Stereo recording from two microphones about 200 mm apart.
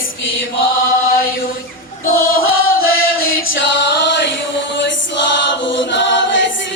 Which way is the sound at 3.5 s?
65° left (ahead or behind).